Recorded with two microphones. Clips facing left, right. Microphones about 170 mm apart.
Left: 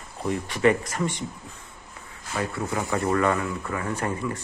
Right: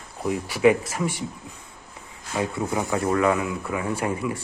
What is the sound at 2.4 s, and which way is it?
Speech, 15° right (ahead or behind).